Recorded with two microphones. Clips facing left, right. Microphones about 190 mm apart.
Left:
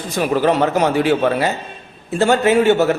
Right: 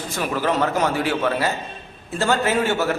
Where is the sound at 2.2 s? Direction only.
20° left (ahead or behind).